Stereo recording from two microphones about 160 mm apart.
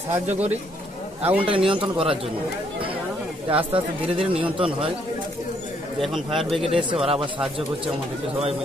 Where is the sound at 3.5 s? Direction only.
35° right (ahead or behind).